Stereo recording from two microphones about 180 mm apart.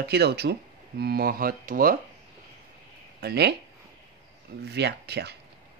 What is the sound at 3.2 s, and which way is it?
Speech, 65° right (ahead or behind).